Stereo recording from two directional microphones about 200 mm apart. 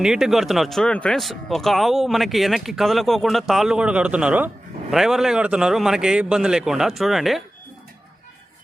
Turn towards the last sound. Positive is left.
turn(degrees=0)  # may be behind; listen again after turning